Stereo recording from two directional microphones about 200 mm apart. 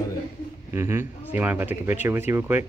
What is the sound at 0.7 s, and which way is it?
Speech, 10° right (ahead or behind).